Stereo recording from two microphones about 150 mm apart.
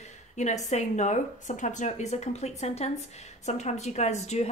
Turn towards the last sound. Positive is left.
turn(degrees=45)  # may be behind; listen again after turning